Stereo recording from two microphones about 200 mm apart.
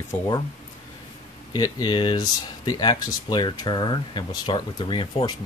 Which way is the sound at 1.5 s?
20° left (ahead or behind).